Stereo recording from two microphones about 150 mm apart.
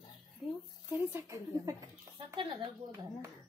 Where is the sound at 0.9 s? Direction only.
15° right (ahead or behind).